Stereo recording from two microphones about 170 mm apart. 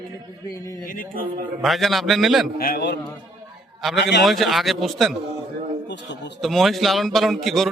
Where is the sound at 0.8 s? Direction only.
55° left (ahead or behind).